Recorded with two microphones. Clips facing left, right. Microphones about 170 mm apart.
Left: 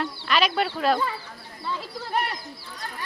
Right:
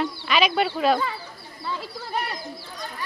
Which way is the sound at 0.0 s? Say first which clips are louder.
Right 2 dB; 10° right (ahead or behind).